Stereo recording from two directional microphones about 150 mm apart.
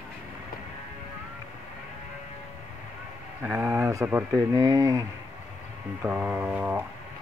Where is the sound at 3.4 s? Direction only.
15° right (ahead or behind).